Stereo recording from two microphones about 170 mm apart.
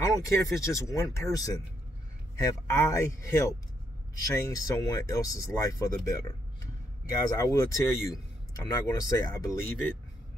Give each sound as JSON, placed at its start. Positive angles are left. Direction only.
{"t": 0.0, "sound": "speech", "side_deg": 20}
{"t": 7.3, "sound": "speech", "side_deg": 20}